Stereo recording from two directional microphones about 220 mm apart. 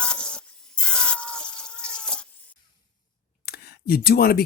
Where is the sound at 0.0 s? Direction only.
5° left (ahead or behind).